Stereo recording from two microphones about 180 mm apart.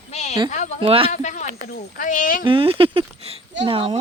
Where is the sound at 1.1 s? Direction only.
40° left (ahead or behind).